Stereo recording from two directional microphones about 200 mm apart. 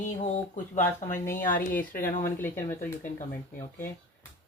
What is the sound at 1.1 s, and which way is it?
Speech, 10° left (ahead or behind).